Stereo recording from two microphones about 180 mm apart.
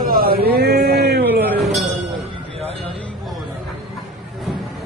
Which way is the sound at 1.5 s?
Centre (ahead or behind).